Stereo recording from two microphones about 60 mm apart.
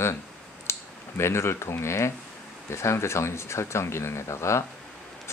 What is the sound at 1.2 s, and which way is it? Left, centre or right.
Speech, left.